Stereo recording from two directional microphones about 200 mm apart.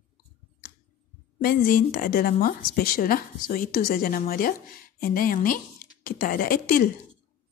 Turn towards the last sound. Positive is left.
turn(degrees=45)  # may be behind; listen again after turning